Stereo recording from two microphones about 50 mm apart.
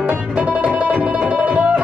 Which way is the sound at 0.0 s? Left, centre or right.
Right.